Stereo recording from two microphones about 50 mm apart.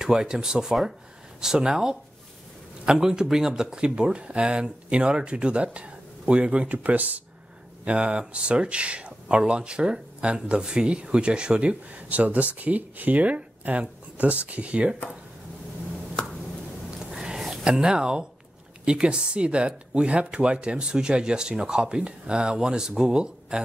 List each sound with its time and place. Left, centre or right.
0.0 s speech: centre; by 7.2 s right
7.8 s speech: right
17.0 s a sound: centre
18.9 s speech: centre